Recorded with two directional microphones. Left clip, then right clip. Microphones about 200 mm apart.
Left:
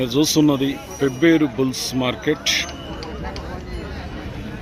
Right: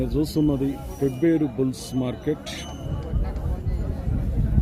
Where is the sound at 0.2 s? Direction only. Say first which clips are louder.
Left 7 dB; 25° left (ahead or behind).